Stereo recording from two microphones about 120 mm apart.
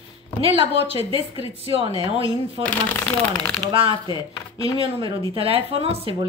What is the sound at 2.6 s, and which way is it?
Speech, 15° left (ahead or behind).